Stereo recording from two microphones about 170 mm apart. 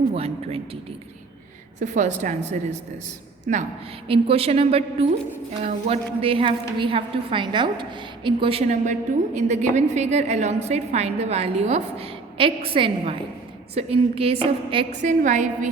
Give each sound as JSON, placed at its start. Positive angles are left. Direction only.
{"t": 0.1, "sound": "a woman's voice", "side_deg": -35}
{"t": 1.8, "sound": "a woman's voice", "side_deg": -45}
{"t": 4.1, "sound": "a woman's voice", "side_deg": -35}
{"t": 15.0, "sound": "a woman's voice", "side_deg": -50}